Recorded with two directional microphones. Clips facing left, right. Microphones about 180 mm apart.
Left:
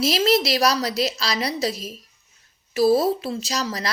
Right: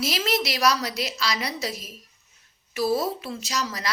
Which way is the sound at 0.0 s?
35° left (ahead or behind).